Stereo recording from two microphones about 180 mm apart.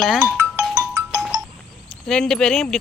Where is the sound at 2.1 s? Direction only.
5° left (ahead or behind).